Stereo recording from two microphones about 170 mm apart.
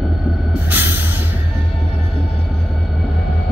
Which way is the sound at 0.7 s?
10° right (ahead or behind).